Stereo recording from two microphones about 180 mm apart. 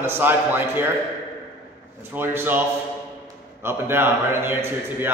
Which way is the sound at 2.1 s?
10° right (ahead or behind).